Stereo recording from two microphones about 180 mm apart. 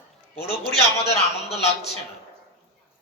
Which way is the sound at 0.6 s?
35° left (ahead or behind).